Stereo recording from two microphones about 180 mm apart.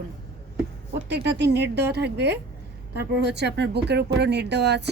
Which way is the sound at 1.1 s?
70° right (ahead or behind).